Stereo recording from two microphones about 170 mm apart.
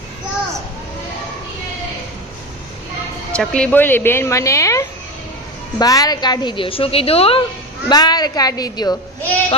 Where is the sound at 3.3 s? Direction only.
5° left (ahead or behind); by 7.4 s 35° left (ahead or behind).